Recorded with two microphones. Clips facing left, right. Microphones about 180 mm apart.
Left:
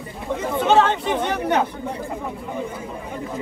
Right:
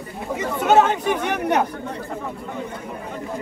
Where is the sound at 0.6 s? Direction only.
5° right (ahead or behind).